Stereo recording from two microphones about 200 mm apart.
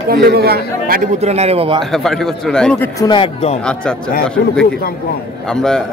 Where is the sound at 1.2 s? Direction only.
30° right (ahead or behind).